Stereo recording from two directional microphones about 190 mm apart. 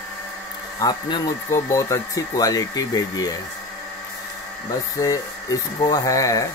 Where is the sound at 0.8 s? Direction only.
20° left (ahead or behind).